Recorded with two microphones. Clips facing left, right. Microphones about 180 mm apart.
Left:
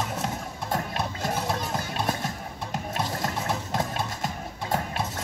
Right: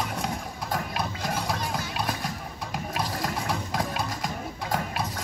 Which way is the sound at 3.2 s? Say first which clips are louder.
Even; 25° left (ahead or behind).